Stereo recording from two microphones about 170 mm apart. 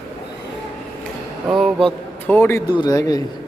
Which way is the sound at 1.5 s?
Centre (ahead or behind).